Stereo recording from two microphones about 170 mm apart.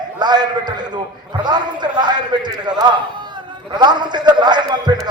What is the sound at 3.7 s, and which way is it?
A man's voice, 25° right (ahead or behind).